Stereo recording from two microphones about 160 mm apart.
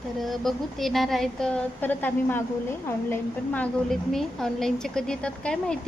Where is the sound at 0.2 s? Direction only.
Centre (ahead or behind).